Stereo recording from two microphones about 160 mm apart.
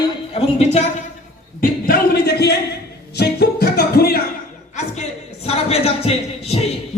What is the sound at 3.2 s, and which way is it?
Music, 90° left.